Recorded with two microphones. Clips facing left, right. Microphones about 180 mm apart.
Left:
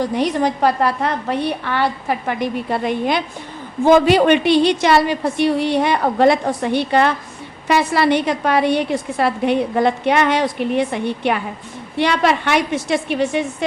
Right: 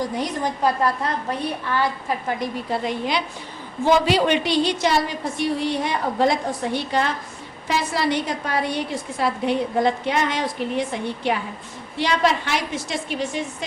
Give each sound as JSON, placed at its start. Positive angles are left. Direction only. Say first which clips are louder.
{"t": 0.0, "sound": "a woman's voice", "louder": "left 7 dB", "side_deg": 70}